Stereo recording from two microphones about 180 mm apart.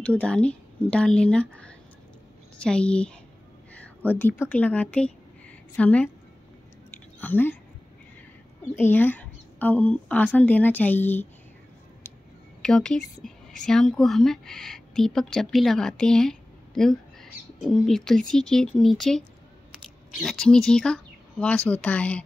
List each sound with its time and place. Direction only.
0.0 s a woman's voice: 5° left (ahead or behind)
7.2 s speech: 10° left (ahead or behind)
8.7 s a woman's voice: 10° left (ahead or behind)
12.6 s a woman's voice: 5° left (ahead or behind)